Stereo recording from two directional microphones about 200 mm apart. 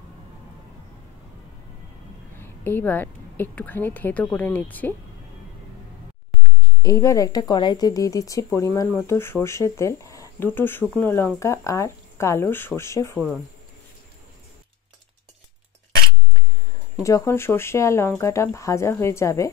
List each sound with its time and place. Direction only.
2.3 s a woman's voice: 10° left (ahead or behind)
6.8 s speech: 15° left (ahead or behind)
17.0 s speech: 15° left (ahead or behind)